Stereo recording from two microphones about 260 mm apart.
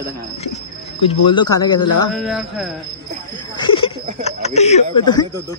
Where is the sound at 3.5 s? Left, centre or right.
Centre.